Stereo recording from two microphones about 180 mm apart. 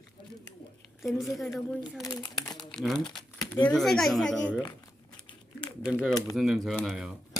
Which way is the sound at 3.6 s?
5° left (ahead or behind).